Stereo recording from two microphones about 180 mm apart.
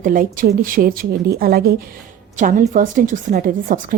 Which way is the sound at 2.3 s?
45° right (ahead or behind).